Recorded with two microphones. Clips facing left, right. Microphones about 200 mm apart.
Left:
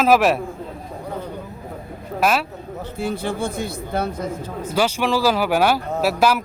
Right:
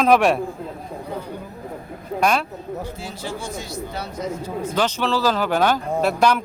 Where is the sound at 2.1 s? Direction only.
5° left (ahead or behind).